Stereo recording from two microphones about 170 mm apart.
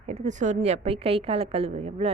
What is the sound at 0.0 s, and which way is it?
A woman's voice, 40° right (ahead or behind).